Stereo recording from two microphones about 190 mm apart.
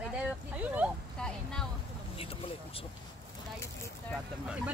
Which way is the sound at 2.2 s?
30° left (ahead or behind).